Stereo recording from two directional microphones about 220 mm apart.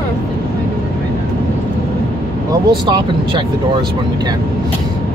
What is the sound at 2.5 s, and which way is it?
Speech, 20° right (ahead or behind).